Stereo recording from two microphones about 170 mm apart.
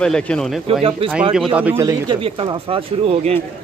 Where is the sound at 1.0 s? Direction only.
30° right (ahead or behind).